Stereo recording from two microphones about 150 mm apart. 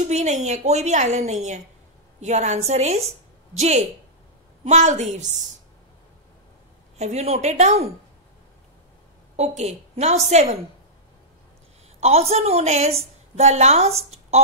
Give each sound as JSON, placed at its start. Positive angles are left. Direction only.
{"t": 0.0, "sound": "a woman's voice", "side_deg": -50}
{"t": 7.0, "sound": "a woman's voice", "side_deg": -50}
{"t": 9.4, "sound": "a woman's voice", "side_deg": -50}
{"t": 12.0, "sound": "a woman's voice", "side_deg": -45}